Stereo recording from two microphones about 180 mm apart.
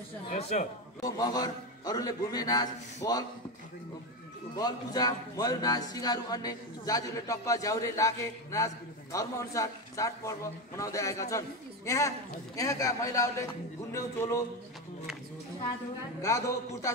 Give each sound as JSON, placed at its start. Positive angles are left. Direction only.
{"t": 0.3, "sound": "speech", "side_deg": 40}
{"t": 1.0, "sound": "speech", "side_deg": 20}
{"t": 4.6, "sound": "speech", "side_deg": 20}
{"t": 16.2, "sound": "speech", "side_deg": 15}